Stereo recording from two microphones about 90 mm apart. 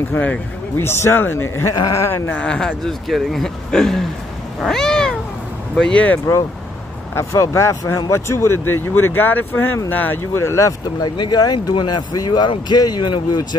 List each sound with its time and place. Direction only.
0.1 s speech: 20° left (ahead or behind); by 2.0 s 40° left (ahead or behind)
2.0 s speech: 25° left (ahead or behind)
2.4 s speech: 10° left (ahead or behind)
4.6 s cat: 5° left (ahead or behind)
7.2 s speech: 30° left (ahead or behind)
11.1 s speech: 50° left (ahead or behind)